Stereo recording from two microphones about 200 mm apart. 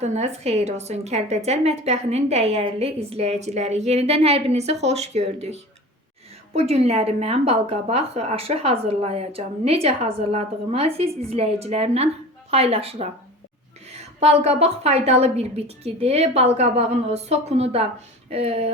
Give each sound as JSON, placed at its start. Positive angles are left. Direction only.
{"t": 0.0, "sound": "a woman's voice", "side_deg": -35}